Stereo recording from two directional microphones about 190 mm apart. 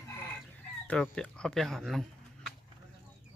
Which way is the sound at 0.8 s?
5° left (ahead or behind).